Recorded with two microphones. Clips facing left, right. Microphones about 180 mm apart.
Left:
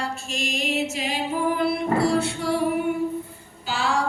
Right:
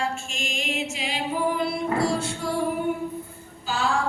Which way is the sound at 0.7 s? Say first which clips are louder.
Left 4 dB; 40° left (ahead or behind).